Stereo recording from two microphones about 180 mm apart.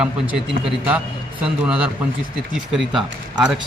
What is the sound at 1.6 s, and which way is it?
A man's voice, 5° right (ahead or behind).